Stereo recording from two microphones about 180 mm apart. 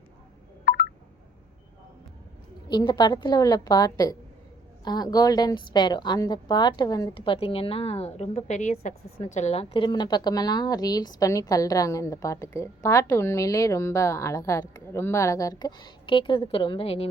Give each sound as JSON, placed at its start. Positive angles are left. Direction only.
{"t": 0.6, "sound": "telephone dialing", "side_deg": 60}
{"t": 2.6, "sound": "a woman's voice", "side_deg": 25}